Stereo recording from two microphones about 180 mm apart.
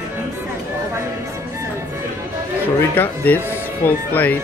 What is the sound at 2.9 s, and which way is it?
Speech, 10° left (ahead or behind).